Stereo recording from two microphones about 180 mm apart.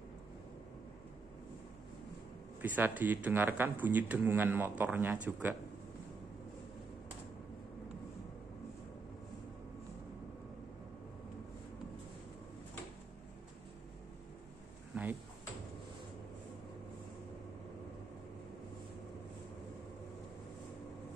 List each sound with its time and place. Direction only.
2.6 s speech: 10° right (ahead or behind)
14.9 s drawer open or close: 5° right (ahead or behind)